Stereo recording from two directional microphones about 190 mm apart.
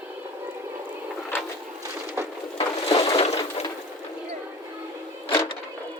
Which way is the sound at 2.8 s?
20° left (ahead or behind).